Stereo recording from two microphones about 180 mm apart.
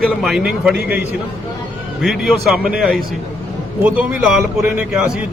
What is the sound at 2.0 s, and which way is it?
A man's voice, centre (ahead or behind).